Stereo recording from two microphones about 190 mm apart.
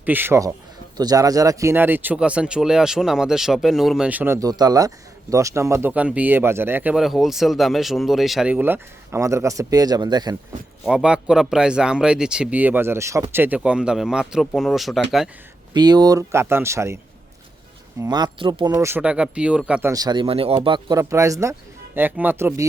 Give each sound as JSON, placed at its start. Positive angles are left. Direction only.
{"t": 0.0, "sound": "speech", "side_deg": -10}
{"t": 10.8, "sound": "a man's voice", "side_deg": -5}
{"t": 15.7, "sound": "speech", "side_deg": -20}
{"t": 18.0, "sound": "speech", "side_deg": -20}
{"t": 19.9, "sound": "speech", "side_deg": -20}